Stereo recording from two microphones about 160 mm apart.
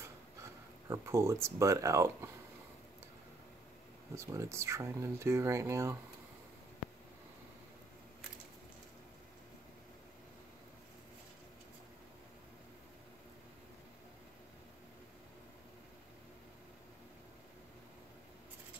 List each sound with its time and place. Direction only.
0.0 s speech: 20° right (ahead or behind)
4.1 s speech: 20° right (ahead or behind)